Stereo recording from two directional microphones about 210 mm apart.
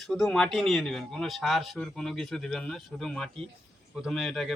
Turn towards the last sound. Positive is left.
turn(degrees=0)  # may be behind; listen again after turning